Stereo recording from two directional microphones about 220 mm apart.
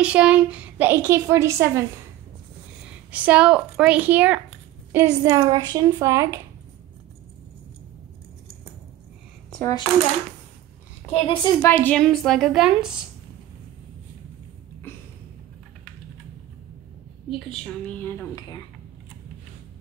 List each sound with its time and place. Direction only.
0.0 s a woman's voice: 5° right (ahead or behind)
3.1 s a woman's voice: 5° right (ahead or behind)
9.5 s a sound: 5° left (ahead or behind)
11.1 s a woman's voice: 25° left (ahead or behind)
11.6 s a woman's voice: 10° left (ahead or behind)
17.3 s a woman's voice: 5° left (ahead or behind)